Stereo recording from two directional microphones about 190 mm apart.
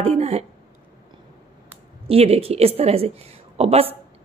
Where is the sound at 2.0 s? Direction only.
30° right (ahead or behind).